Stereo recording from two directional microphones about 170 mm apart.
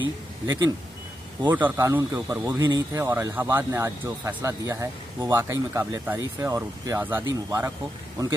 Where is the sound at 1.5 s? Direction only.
15° right (ahead or behind).